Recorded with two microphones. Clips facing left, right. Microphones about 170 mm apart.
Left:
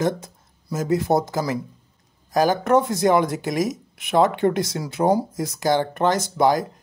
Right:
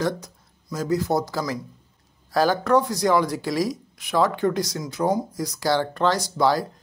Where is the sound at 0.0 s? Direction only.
25° left (ahead or behind).